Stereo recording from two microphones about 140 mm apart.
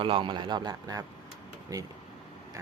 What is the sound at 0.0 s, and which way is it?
Speech, 40° right (ahead or behind).